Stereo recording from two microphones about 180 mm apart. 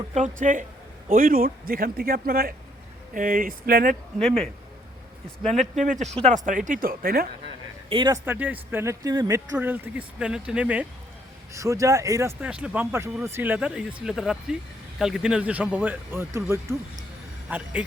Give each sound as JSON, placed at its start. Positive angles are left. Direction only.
{"t": 0.1, "sound": "a man's voice", "side_deg": -45}
{"t": 5.8, "sound": "a man's voice", "side_deg": -40}
{"t": 7.9, "sound": "speech", "side_deg": -25}
{"t": 8.2, "sound": "speech", "side_deg": -10}